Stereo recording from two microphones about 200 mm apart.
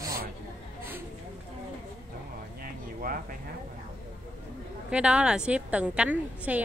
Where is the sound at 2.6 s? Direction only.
45° right (ahead or behind).